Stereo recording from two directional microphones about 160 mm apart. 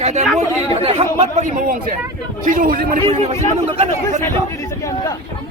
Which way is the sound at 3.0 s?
35° right (ahead or behind).